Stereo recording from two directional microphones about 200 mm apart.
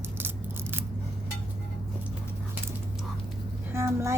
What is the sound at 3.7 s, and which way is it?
Vehicle, 15° right (ahead or behind).